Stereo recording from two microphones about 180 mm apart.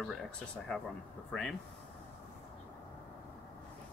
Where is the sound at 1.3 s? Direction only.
Centre (ahead or behind).